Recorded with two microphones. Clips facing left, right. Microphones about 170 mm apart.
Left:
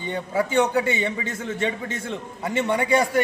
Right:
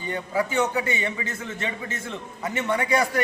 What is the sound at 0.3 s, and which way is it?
Speech, 30° left (ahead or behind).